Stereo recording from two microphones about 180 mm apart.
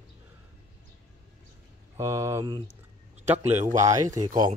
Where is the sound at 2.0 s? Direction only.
15° right (ahead or behind).